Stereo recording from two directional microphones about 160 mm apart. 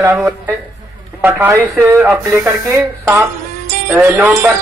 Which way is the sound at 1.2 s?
10° right (ahead or behind).